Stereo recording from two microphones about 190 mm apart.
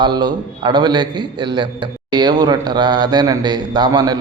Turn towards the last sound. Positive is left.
turn(degrees=-20)  # may be behind; listen again after turning